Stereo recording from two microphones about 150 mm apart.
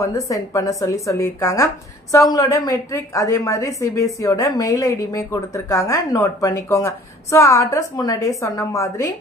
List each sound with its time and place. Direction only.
0.0 s a woman's voice: 20° left (ahead or behind)